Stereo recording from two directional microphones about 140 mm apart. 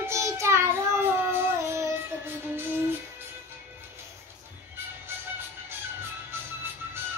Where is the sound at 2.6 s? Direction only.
15° right (ahead or behind).